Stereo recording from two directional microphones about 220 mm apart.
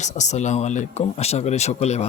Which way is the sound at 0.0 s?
30° left (ahead or behind).